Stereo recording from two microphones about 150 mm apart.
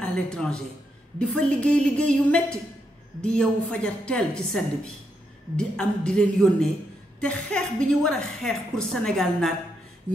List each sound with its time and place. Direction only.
0.0 s a man's voice: 5° left (ahead or behind)